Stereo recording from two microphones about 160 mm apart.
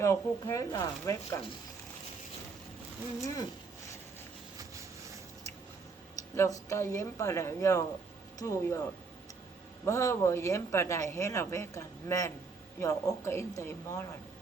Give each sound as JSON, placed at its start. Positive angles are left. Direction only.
{"t": 0.0, "sound": "speech", "side_deg": 20}
{"t": 3.2, "sound": "speech", "side_deg": 25}
{"t": 4.5, "sound": "a sound", "side_deg": -20}
{"t": 6.3, "sound": "speech", "side_deg": 20}
{"t": 9.8, "sound": "speech", "side_deg": 15}